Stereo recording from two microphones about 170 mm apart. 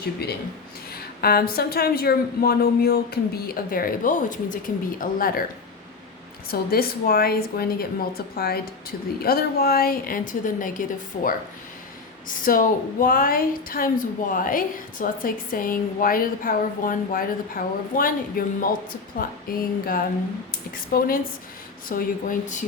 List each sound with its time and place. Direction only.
0.2 s a woman's voice: 70° left (ahead or behind)
6.5 s a woman's voice: 60° left (ahead or behind)
12.5 s a woman's voice: 55° left (ahead or behind)